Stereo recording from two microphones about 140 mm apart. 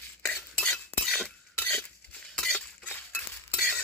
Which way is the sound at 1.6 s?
10° left (ahead or behind).